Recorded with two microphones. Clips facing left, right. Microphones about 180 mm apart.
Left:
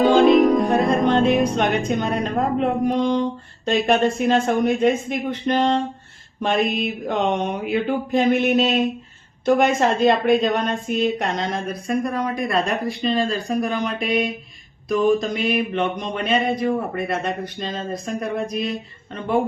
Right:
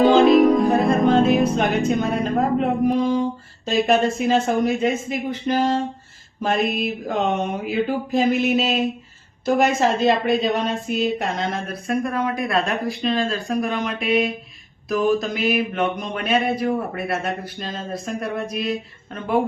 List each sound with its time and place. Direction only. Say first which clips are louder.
0.0 s music: right 1 dB; centre (ahead or behind)
2.2 s a woman's voice: right 1 dB; centre (ahead or behind)
3.0 s music: even; 80° left
3.7 s a woman's voice: even; centre (ahead or behind)